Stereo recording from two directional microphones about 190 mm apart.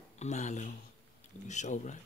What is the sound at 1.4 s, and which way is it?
Speech, 40° left (ahead or behind).